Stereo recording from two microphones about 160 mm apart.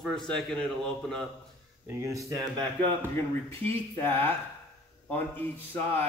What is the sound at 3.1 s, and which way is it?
Speech, 15° left (ahead or behind).